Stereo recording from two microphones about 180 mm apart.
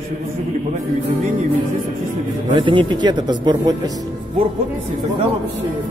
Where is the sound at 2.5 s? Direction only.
30° right (ahead or behind).